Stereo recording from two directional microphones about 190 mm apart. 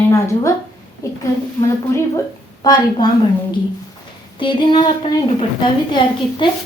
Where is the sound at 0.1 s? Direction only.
15° left (ahead or behind).